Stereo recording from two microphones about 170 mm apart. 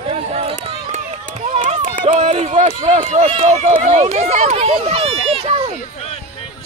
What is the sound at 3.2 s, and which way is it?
Speech, 35° right (ahead or behind).